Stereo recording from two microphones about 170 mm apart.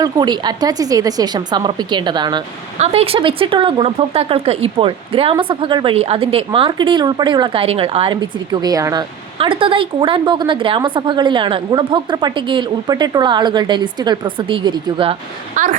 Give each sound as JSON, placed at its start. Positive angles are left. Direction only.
{"t": 0.0, "sound": "speech", "side_deg": -25}
{"t": 2.7, "sound": "speech", "side_deg": -40}
{"t": 15.5, "sound": "speech", "side_deg": -50}